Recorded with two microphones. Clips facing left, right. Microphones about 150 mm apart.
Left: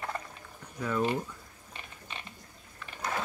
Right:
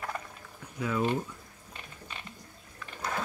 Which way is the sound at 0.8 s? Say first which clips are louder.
Even; 5° right (ahead or behind).